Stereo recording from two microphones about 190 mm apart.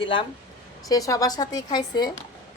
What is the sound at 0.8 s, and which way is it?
A woman's voice, 20° left (ahead or behind).